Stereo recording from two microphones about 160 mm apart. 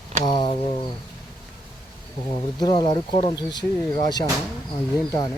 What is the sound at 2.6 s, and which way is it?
Speech, 25° left (ahead or behind).